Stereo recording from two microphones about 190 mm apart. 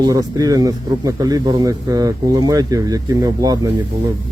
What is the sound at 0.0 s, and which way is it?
Speech, 20° right (ahead or behind).